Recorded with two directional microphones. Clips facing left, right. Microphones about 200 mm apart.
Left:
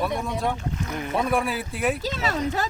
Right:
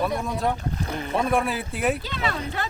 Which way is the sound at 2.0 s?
40° left (ahead or behind).